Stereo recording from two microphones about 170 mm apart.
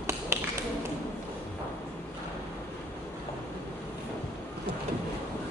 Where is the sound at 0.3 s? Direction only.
15° right (ahead or behind).